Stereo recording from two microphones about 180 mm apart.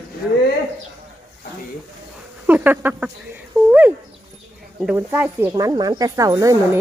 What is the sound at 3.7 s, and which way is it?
Dog, 10° right (ahead or behind).